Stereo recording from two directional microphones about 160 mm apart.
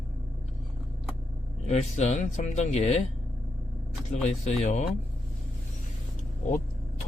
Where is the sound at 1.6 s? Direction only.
45° left (ahead or behind).